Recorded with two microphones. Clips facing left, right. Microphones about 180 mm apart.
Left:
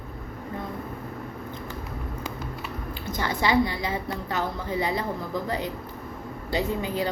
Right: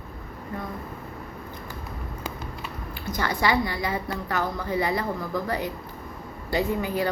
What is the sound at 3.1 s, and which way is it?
A woman's voice, 20° left (ahead or behind).